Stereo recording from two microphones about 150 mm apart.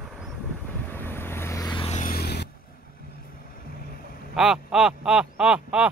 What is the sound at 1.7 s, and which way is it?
Vehicle, 40° left (ahead or behind).